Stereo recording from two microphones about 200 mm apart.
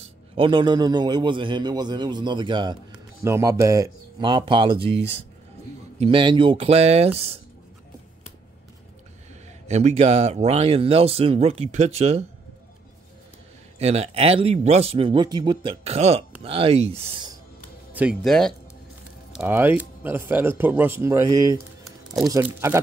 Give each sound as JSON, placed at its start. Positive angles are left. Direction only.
{"t": 0.0, "sound": "a man's voice", "side_deg": -25}
{"t": 9.7, "sound": "speech", "side_deg": -35}
{"t": 13.7, "sound": "a man's voice", "side_deg": -30}
{"t": 17.9, "sound": "speech", "side_deg": 0}
{"t": 19.3, "sound": "speech", "side_deg": -10}